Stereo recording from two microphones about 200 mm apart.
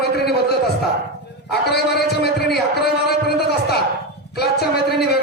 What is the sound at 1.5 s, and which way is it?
A man's voice, 55° left (ahead or behind).